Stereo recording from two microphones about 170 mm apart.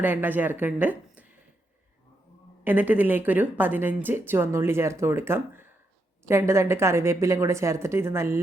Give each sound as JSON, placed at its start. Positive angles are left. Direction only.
{"t": 0.0, "sound": "speech", "side_deg": -10}
{"t": 2.6, "sound": "speech", "side_deg": -10}